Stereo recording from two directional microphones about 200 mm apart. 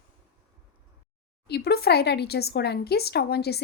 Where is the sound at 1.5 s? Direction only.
55° left (ahead or behind).